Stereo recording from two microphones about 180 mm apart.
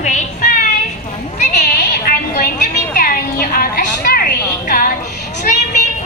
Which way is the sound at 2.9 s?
55° left (ahead or behind).